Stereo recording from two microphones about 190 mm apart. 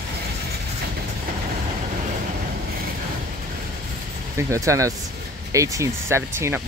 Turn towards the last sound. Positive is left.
turn(degrees=-15)  # may be behind; listen again after turning